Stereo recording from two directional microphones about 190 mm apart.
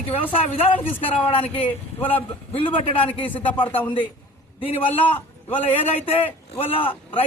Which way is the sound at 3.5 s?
25° left (ahead or behind).